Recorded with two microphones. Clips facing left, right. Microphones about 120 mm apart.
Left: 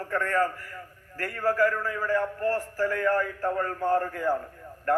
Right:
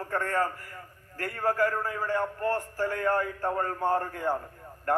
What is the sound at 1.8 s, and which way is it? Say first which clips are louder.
Speech: left 1 dB; 40° right (ahead or behind).